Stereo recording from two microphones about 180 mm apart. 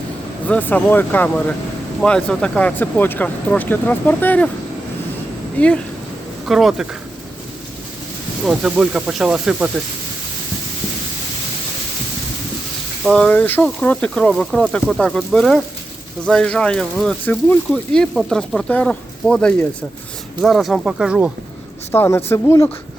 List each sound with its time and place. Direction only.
0.4 s speech: 10° left (ahead or behind)
5.5 s speech: 5° left (ahead or behind)
8.4 s speech: 5° right (ahead or behind)
13.1 s speech: 5° left (ahead or behind)
21.9 s speech: 15° left (ahead or behind)